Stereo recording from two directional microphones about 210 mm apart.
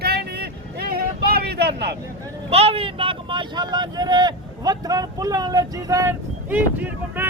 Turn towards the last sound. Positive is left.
turn(degrees=-10)  # may be behind; listen again after turning